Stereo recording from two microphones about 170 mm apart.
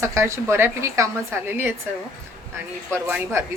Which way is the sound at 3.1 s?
10° right (ahead or behind).